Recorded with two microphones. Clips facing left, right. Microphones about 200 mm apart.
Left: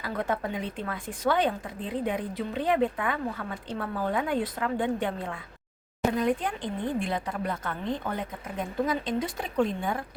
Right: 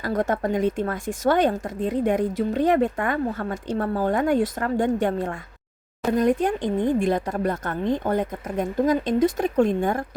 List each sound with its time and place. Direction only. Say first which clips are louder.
0.0 s speech: right 6 dB; 45° right (ahead or behind)